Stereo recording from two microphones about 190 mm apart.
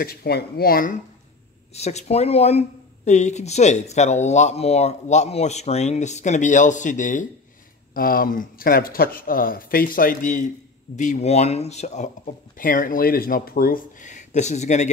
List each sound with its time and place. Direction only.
0.0 s speech: 55° left (ahead or behind)
1.7 s speech: 35° left (ahead or behind)